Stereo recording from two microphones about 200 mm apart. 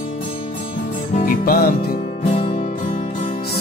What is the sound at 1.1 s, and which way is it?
Music, 45° left (ahead or behind).